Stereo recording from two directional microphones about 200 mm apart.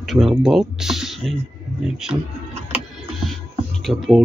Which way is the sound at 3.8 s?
Centre (ahead or behind).